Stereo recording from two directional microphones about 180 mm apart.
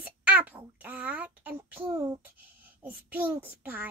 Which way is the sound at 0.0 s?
10° right (ahead or behind).